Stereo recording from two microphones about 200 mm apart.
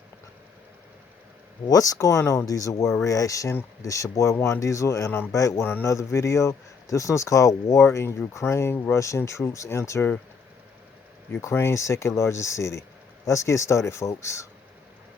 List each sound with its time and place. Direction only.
1.6 s a man's voice: 15° left (ahead or behind)
11.4 s a man's voice: 15° left (ahead or behind)